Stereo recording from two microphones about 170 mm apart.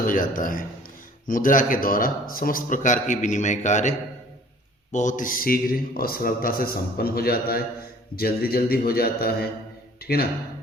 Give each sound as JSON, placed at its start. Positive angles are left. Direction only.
{"t": 0.0, "sound": "a man's voice", "side_deg": 55}